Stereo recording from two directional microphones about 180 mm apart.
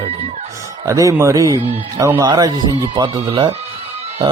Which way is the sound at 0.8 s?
15° right (ahead or behind).